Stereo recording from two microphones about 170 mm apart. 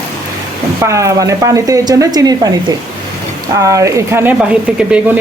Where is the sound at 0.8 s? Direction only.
15° right (ahead or behind).